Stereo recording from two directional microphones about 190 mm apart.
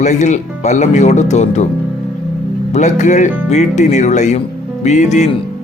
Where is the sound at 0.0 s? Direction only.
40° left (ahead or behind).